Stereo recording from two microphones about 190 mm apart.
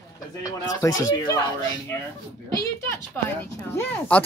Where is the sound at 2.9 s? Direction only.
10° left (ahead or behind).